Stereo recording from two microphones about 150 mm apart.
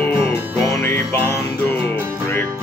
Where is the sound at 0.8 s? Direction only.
15° left (ahead or behind).